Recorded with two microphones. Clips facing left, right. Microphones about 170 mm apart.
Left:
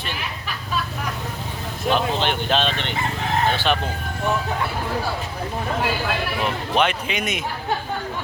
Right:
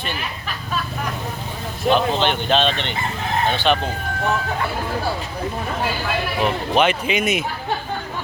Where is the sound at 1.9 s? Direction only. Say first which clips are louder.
Right 3 dB; 5° left (ahead or behind).